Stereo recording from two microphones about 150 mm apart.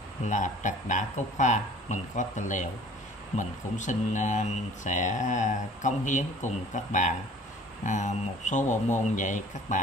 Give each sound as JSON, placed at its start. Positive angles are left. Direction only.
{"t": 0.2, "sound": "speech", "side_deg": 55}